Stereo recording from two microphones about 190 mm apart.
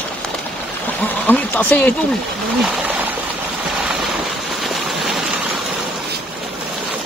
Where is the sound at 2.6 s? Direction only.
10° right (ahead or behind).